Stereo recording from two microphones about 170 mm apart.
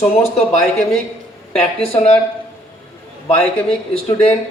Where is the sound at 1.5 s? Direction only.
35° left (ahead or behind).